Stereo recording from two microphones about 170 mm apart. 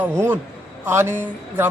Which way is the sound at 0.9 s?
15° right (ahead or behind).